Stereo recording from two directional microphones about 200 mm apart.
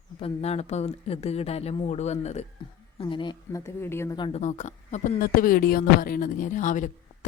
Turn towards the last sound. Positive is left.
turn(degrees=40)  # may be behind; listen again after turning